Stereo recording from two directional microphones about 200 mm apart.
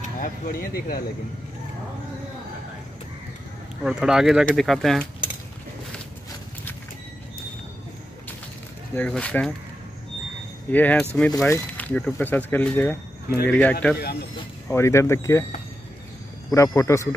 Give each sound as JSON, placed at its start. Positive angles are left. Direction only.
{"t": 0.2, "sound": "speech", "side_deg": 45}
{"t": 3.8, "sound": "speech", "side_deg": -5}
{"t": 8.9, "sound": "speech", "side_deg": 5}
{"t": 10.7, "sound": "speech", "side_deg": 10}
{"t": 16.5, "sound": "speech", "side_deg": 15}